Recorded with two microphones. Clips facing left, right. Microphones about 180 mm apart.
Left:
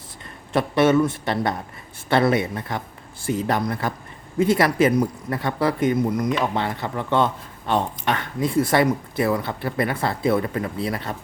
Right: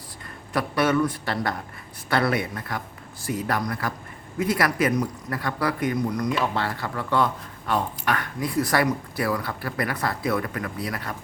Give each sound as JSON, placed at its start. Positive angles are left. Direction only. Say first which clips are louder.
{"t": 0.5, "sound": "speech", "louder": "left 5 dB", "side_deg": 25}